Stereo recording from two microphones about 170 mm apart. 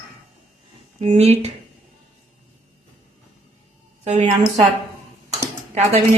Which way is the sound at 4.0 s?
45° right (ahead or behind).